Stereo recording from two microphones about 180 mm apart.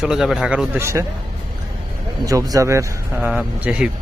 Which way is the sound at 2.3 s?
20° right (ahead or behind).